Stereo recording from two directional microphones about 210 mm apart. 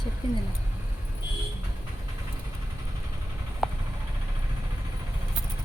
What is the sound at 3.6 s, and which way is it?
Vehicle, 5° right (ahead or behind).